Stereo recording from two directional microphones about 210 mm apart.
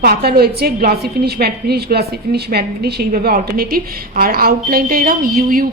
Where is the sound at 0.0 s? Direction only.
45° right (ahead or behind).